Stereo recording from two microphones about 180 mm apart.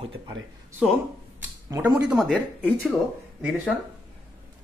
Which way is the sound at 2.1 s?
Centre (ahead or behind).